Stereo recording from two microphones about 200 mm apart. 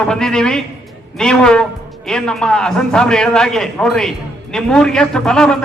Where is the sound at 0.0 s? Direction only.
5° left (ahead or behind).